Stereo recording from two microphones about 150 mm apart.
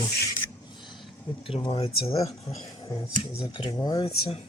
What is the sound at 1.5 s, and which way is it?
Speech, 40° left (ahead or behind).